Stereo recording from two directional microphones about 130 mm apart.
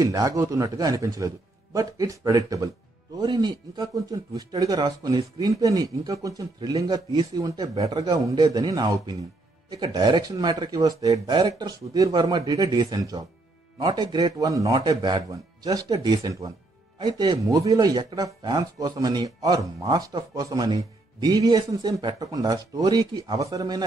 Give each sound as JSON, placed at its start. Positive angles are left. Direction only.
{"t": 0.0, "sound": "a man's voice", "side_deg": -30}